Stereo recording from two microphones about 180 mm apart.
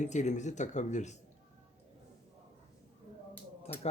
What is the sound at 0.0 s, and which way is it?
Speech, 40° left (ahead or behind).